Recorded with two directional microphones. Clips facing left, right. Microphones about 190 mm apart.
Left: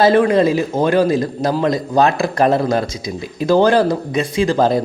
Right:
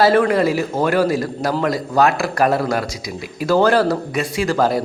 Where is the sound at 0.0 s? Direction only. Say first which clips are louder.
Left 2 dB; 20° left (ahead or behind).